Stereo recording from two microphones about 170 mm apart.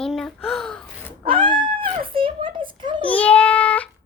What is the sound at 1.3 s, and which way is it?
A child's voice, 25° right (ahead or behind).